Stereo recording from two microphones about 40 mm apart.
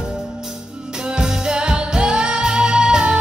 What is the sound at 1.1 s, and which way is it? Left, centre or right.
Music, right.